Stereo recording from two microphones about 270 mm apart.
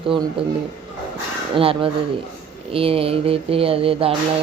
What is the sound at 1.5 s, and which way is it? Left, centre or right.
Speech, centre.